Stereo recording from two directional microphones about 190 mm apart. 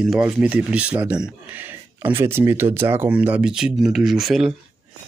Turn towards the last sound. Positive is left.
turn(degrees=0)  # may be behind; listen again after turning